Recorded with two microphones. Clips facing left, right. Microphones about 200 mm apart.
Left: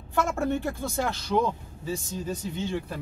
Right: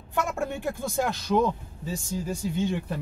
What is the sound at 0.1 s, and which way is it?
Speech, 15° right (ahead or behind).